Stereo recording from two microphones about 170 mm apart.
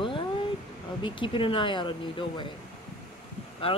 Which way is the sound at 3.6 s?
35° left (ahead or behind).